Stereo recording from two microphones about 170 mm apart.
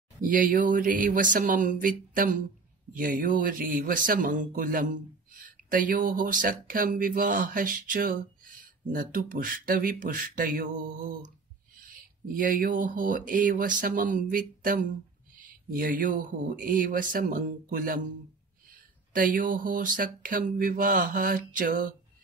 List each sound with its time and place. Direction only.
0.2 s speech: 50° right (ahead or behind)
19.1 s speech: 55° right (ahead or behind)